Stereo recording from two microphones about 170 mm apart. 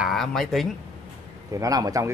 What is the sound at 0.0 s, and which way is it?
Speech, centre (ahead or behind).